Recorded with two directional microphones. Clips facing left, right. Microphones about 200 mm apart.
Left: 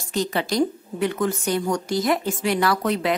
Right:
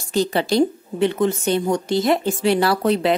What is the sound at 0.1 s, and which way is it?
A woman's voice, 30° right (ahead or behind).